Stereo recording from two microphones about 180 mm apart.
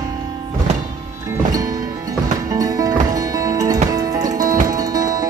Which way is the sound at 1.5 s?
20° right (ahead or behind).